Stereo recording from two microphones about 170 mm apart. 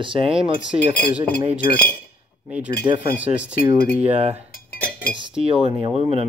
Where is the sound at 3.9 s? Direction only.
35° right (ahead or behind).